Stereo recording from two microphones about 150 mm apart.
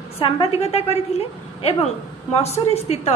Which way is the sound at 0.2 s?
40° left (ahead or behind).